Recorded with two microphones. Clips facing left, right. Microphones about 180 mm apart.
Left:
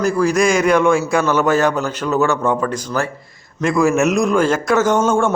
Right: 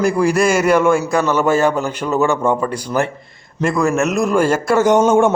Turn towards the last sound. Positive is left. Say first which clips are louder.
# right 3 dB
turn(degrees=-15)  # may be behind; listen again after turning